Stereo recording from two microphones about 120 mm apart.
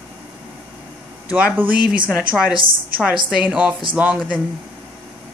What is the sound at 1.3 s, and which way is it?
Speech, 10° right (ahead or behind).